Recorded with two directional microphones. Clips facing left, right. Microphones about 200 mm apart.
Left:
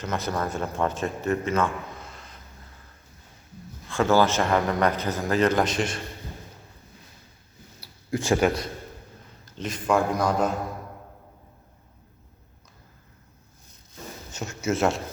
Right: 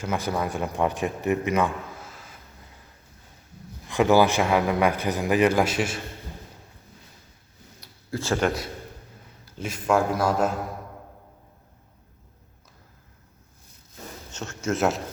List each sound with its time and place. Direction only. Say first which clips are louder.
0.0 s speech: right 1 dB; 10° right (ahead or behind)
2.0 s a sound: even; 5° right (ahead or behind)
3.8 s speech: right 2 dB; 15° right (ahead or behind)
8.1 s speech: left 3 dB; 15° left (ahead or behind)
9.6 s a man's voice: right 1 dB; 5° right (ahead or behind)
14.3 s speech: left 1 dB; 10° left (ahead or behind)